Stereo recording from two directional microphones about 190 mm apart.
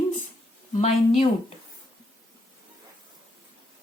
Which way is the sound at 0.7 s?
35° left (ahead or behind).